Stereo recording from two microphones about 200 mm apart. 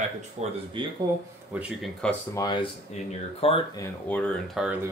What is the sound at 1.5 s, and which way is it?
Speech, 5° right (ahead or behind).